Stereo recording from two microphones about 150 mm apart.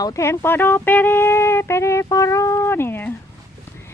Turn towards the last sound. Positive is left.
turn(degrees=15)  # may be behind; listen again after turning